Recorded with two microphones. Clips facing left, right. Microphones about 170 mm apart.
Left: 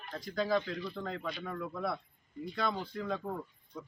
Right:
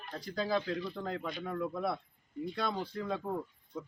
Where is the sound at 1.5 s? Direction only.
20° right (ahead or behind).